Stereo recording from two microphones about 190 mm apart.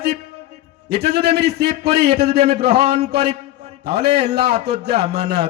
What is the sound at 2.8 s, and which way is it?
Mantra, 35° right (ahead or behind).